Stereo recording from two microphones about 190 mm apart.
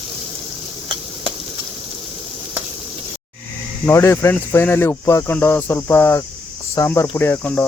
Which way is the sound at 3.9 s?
15° left (ahead or behind).